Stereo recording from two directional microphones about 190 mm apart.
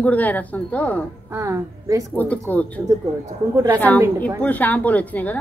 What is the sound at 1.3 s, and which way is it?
Speech, 15° right (ahead or behind).